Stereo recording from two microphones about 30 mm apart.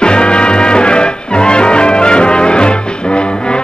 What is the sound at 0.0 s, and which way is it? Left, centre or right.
Music, left.